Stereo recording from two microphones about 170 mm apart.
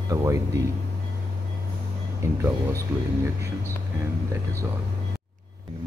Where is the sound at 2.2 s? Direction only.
15° right (ahead or behind).